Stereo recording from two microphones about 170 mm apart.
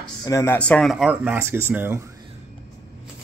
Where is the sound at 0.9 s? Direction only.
5° right (ahead or behind).